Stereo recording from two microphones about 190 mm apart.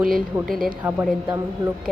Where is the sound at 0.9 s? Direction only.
10° right (ahead or behind).